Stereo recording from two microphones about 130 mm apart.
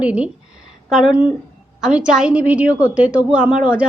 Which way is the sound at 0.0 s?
10° right (ahead or behind).